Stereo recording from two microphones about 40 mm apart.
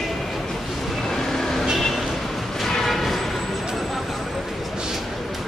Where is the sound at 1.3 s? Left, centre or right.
Centre.